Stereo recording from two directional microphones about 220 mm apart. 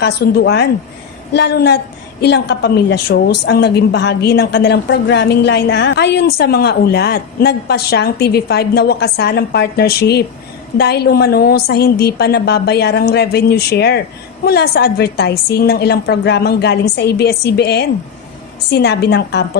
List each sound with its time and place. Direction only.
0.0 s a woman's voice: 50° left (ahead or behind)